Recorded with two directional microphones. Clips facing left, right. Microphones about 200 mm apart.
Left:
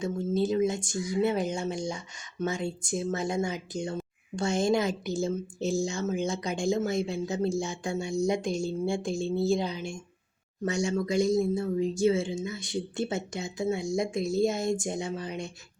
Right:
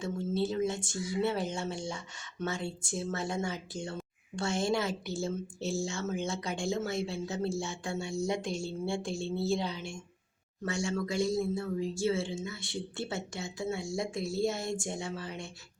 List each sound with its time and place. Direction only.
0.0 s speech: 15° left (ahead or behind)